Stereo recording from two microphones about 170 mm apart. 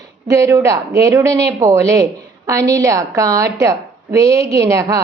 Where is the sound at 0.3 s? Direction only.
20° right (ahead or behind).